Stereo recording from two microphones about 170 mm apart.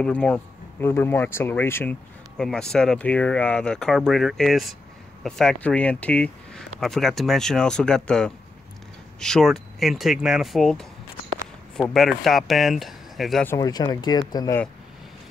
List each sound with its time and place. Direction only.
0.0 s a man's voice: 5° left (ahead or behind)
13.6 s speech: 25° left (ahead or behind)